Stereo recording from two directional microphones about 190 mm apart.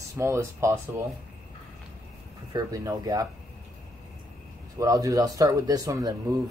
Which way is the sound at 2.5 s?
20° right (ahead or behind).